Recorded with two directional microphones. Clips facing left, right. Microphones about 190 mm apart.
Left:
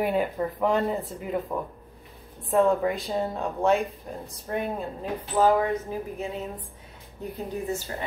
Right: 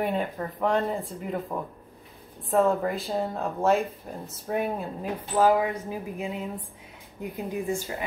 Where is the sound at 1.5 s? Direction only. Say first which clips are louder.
Left 2 dB; 10° right (ahead or behind).